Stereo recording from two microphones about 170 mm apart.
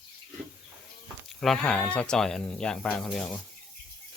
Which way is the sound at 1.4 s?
5° left (ahead or behind).